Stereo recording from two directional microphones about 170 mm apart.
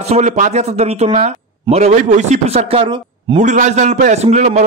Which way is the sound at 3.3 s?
45° right (ahead or behind).